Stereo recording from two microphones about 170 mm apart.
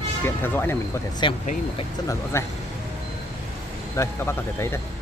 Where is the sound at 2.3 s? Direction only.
15° left (ahead or behind).